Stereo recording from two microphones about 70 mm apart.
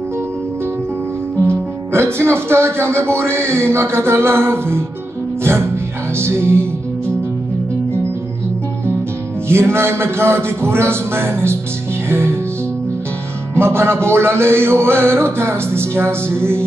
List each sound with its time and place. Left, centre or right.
1.5 s speech: right
5.4 s music: right
6.1 s speech: right
9.5 s speech: right
12.1 s music: right
13.6 s speech: right